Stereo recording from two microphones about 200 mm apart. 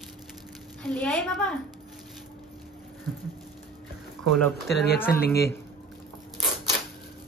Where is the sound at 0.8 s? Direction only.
5° left (ahead or behind).